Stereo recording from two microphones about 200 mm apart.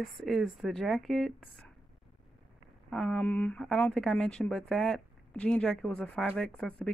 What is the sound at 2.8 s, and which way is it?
Speech, centre (ahead or behind).